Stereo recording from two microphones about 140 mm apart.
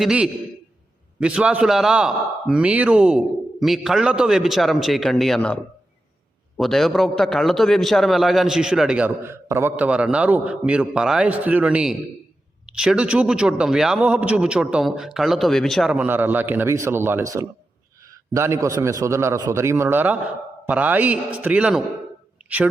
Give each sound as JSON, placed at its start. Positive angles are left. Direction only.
{"t": 0.0, "sound": "a man's voice", "side_deg": -5}
{"t": 6.6, "sound": "a man's voice", "side_deg": 0}